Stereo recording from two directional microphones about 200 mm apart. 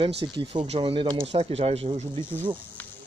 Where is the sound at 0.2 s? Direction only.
25° right (ahead or behind).